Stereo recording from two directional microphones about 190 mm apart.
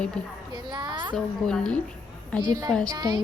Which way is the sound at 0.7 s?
25° right (ahead or behind).